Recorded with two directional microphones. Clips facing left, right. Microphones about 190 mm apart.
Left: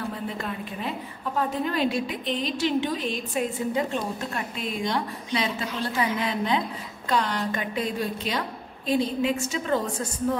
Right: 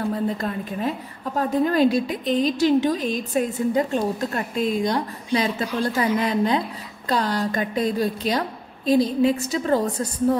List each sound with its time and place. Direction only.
0.1 s a woman's voice: 40° right (ahead or behind)